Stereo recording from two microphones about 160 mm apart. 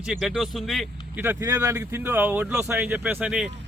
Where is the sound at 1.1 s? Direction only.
10° right (ahead or behind).